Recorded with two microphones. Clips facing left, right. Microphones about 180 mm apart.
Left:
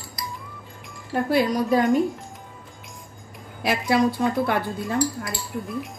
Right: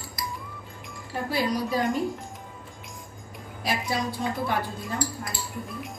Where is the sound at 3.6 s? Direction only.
60° left (ahead or behind).